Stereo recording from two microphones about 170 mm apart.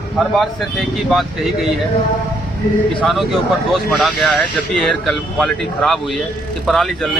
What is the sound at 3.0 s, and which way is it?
Speech, centre (ahead or behind).